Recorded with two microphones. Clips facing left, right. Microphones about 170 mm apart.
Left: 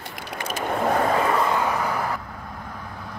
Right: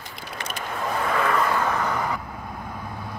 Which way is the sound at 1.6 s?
10° left (ahead or behind).